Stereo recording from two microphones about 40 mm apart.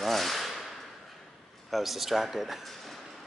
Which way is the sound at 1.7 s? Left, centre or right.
Centre.